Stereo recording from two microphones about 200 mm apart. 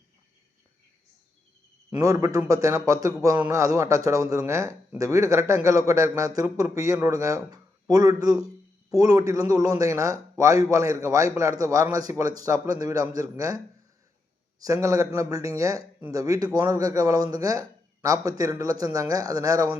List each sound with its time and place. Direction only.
1.9 s speech: 15° right (ahead or behind)
14.6 s speech: 15° right (ahead or behind)